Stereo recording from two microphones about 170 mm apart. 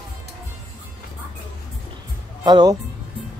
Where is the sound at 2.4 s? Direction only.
25° right (ahead or behind).